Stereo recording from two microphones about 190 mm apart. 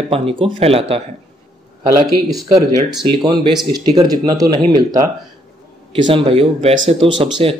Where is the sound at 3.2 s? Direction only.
20° right (ahead or behind).